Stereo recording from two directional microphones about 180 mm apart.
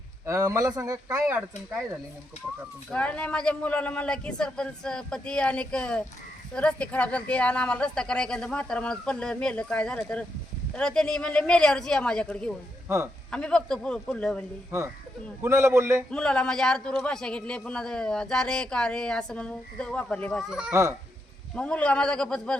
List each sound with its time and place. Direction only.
0.3 s speech: 20° right (ahead or behind)
2.9 s speech: 5° left (ahead or behind)
15.4 s speech: 15° right (ahead or behind)
16.0 s speech: 5° left (ahead or behind)
20.5 s speech: 5° right (ahead or behind)
21.5 s speech: 5° left (ahead or behind)